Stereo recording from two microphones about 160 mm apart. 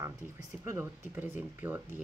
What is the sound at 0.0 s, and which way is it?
Speech, 15° right (ahead or behind).